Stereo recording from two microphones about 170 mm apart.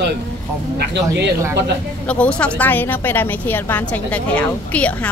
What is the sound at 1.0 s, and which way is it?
Speech, 15° right (ahead or behind).